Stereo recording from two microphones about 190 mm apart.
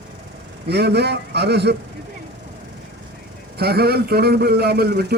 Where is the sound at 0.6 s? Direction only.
60° right (ahead or behind).